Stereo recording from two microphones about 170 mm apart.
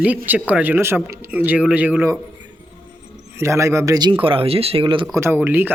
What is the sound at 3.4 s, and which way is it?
Speech, 15° right (ahead or behind).